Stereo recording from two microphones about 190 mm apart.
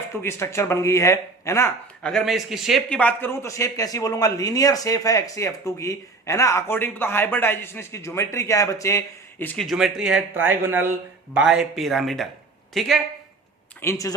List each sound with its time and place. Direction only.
0.2 s a man's voice: 15° left (ahead or behind)
2.0 s a man's voice: centre (ahead or behind)
13.8 s a man's voice: 15° left (ahead or behind)